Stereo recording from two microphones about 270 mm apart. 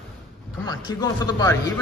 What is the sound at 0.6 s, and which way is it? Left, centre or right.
Speech, centre.